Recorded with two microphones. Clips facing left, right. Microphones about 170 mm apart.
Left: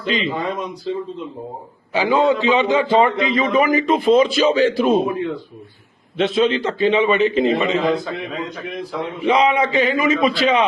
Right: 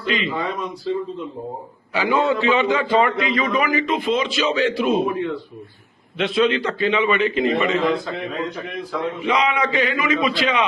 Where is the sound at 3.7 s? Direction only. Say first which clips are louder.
Left 6 dB; 40° left (ahead or behind).